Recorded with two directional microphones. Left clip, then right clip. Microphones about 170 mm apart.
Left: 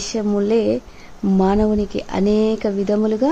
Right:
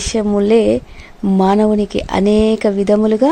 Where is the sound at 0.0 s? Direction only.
10° right (ahead or behind).